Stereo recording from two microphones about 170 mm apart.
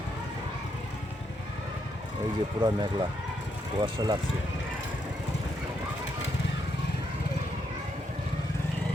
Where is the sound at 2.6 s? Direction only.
25° right (ahead or behind).